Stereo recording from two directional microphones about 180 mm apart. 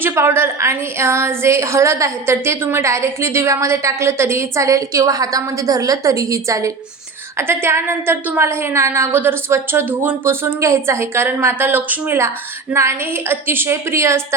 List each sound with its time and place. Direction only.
0.0 s a woman's voice: 15° right (ahead or behind)